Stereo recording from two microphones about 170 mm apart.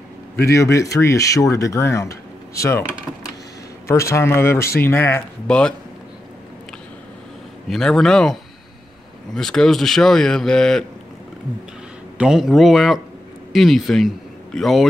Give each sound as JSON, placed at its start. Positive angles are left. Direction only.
{"t": 0.5, "sound": "speech", "side_deg": 15}
{"t": 3.8, "sound": "speech", "side_deg": 15}
{"t": 7.7, "sound": "a man's voice", "side_deg": 5}
{"t": 12.2, "sound": "a man's voice", "side_deg": -5}